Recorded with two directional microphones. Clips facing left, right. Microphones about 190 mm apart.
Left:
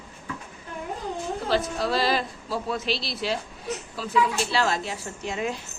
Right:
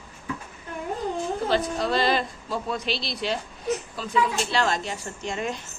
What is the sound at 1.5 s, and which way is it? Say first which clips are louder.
A woman's voice: left 1 dB; centre (ahead or behind).